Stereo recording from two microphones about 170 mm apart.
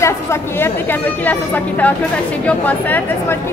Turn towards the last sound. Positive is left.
turn(degrees=10)  # may be behind; listen again after turning